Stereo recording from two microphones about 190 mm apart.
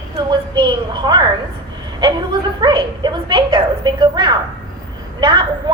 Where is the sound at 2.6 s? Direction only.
20° right (ahead or behind).